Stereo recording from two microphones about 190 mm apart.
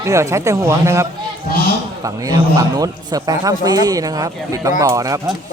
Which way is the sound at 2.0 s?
20° right (ahead or behind).